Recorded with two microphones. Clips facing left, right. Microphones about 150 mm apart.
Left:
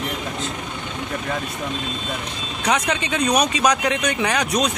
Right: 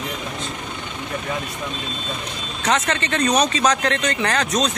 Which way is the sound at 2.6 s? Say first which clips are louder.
Even; 10° left (ahead or behind).